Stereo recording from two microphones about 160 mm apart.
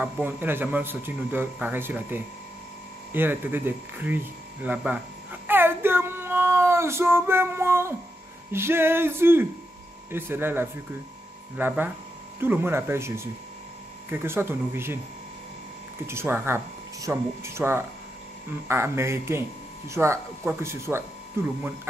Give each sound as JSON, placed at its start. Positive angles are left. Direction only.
{"t": 0.0, "sound": "speech", "side_deg": -10}
{"t": 16.1, "sound": "speech", "side_deg": -15}